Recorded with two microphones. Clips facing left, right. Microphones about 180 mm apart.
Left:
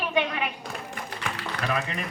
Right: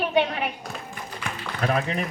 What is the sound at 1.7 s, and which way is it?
Speech, 40° right (ahead or behind).